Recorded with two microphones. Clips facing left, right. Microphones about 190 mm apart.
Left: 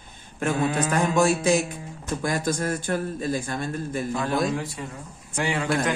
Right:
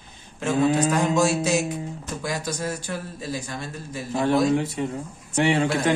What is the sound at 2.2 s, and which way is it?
A man's voice, 50° left (ahead or behind).